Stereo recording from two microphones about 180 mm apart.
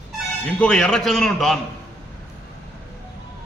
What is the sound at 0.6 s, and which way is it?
A man's voice, 5° left (ahead or behind).